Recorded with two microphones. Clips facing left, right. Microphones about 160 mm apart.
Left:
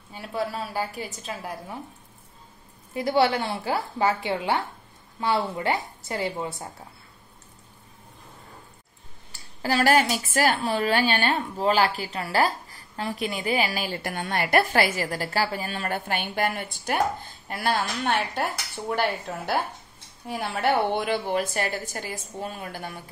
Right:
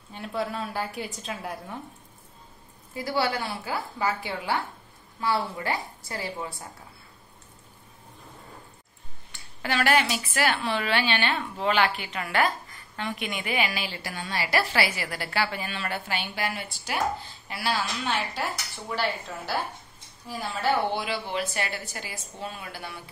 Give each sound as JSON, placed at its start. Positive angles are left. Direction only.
{"t": 0.1, "sound": "a woman's voice", "side_deg": 5}
{"t": 2.9, "sound": "a woman's voice", "side_deg": 20}
{"t": 9.3, "sound": "a woman's voice", "side_deg": 35}